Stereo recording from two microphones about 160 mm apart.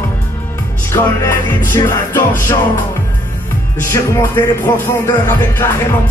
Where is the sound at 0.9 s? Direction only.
20° left (ahead or behind).